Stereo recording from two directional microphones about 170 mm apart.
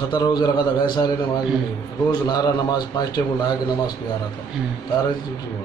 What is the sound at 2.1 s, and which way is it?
A man's voice, 25° left (ahead or behind).